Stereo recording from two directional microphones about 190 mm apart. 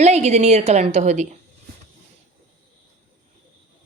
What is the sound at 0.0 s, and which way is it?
Speech, 35° right (ahead or behind).